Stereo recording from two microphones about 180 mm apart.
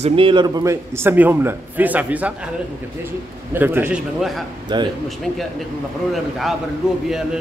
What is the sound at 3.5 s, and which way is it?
Speech, 10° right (ahead or behind).